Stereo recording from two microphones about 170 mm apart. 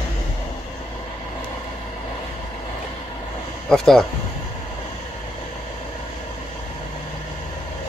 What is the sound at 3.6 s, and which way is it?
Speech, centre (ahead or behind).